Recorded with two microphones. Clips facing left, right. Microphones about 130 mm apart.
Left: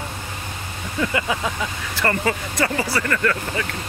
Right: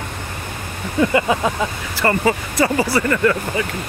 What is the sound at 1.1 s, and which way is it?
Speech, 35° right (ahead or behind).